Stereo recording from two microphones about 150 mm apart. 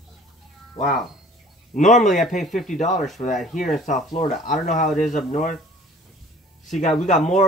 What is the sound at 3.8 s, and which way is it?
Speech, 55° left (ahead or behind).